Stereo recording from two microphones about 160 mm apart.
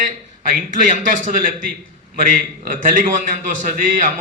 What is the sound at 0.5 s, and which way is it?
A man's voice, 55° right (ahead or behind).